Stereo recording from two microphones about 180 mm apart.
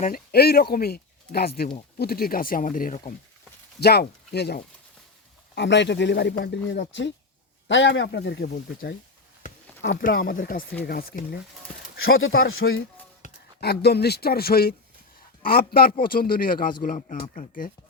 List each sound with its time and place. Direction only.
0.0 s a man's voice: 55° left (ahead or behind)
3.8 s speech: 60° left (ahead or behind)
5.5 s speech: 75° left (ahead or behind)
7.7 s speech: 90° left; by 8.4 s 70° left (ahead or behind)
10.0 s speech: 55° left (ahead or behind)
12.0 s speech: 90° left
13.2 s a sound: 40° left (ahead or behind)
13.6 s a man's voice: 65° left (ahead or behind)